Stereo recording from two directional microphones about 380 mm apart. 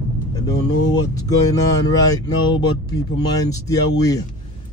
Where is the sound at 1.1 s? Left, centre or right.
Centre.